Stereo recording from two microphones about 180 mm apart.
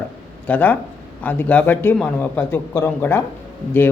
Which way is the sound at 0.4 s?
10° left (ahead or behind).